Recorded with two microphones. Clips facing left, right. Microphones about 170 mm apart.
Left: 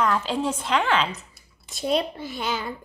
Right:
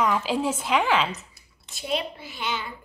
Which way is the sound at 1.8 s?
40° left (ahead or behind).